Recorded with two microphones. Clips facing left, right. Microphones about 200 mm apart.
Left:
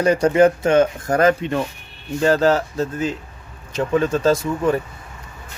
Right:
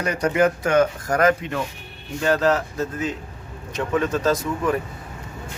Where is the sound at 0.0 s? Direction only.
30° left (ahead or behind).